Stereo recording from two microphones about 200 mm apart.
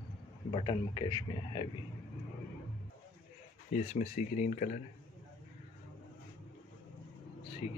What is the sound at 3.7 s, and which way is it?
Speech, 35° left (ahead or behind).